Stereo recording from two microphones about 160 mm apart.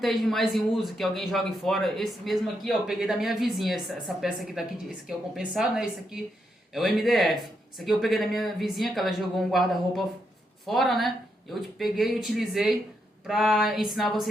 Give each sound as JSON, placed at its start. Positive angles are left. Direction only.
{"t": 0.0, "sound": "speech", "side_deg": 0}